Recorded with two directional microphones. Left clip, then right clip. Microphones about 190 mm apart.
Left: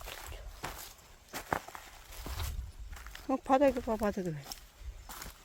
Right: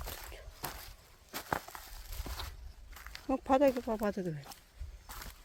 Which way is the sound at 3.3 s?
5° right (ahead or behind).